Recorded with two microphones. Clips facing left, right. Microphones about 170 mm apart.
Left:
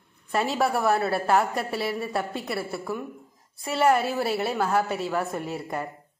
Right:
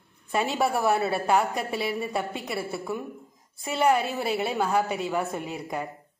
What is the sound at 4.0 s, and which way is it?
A woman's voice, centre (ahead or behind).